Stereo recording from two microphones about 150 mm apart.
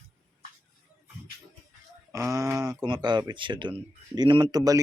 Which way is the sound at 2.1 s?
20° right (ahead or behind).